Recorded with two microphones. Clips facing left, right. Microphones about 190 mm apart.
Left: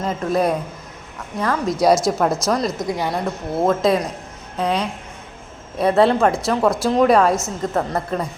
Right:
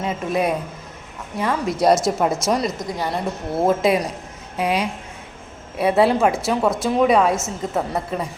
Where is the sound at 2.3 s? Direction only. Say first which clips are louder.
Even; 25° right (ahead or behind).